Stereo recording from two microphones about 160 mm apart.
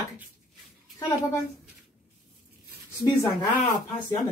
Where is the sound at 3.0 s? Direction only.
25° left (ahead or behind).